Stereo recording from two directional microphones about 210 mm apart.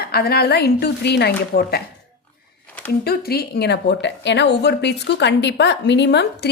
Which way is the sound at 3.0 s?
45° left (ahead or behind).